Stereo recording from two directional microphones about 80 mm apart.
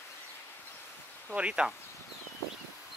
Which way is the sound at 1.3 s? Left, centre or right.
Centre.